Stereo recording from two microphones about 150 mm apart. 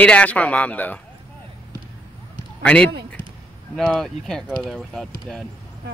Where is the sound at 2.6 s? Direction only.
10° left (ahead or behind).